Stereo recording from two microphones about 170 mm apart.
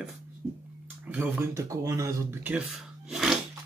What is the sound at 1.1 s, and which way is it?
Speech, 10° right (ahead or behind).